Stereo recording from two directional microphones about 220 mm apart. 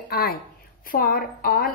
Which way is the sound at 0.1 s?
45° left (ahead or behind).